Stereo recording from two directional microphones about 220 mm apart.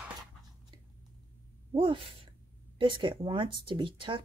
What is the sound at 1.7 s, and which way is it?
Speech, 20° right (ahead or behind).